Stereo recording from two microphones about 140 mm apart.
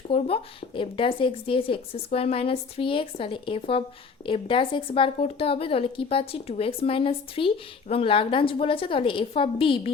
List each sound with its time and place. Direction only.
0.1 s a woman's voice: 40° left (ahead or behind)